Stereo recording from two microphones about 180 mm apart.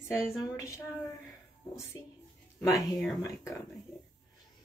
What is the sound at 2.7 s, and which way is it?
Speech, centre (ahead or behind).